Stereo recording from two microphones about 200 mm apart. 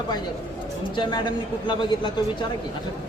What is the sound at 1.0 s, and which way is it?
A man's voice, 20° left (ahead or behind).